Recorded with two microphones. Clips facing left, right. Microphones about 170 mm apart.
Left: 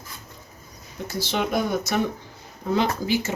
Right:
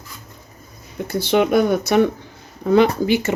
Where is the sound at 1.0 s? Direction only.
60° right (ahead or behind).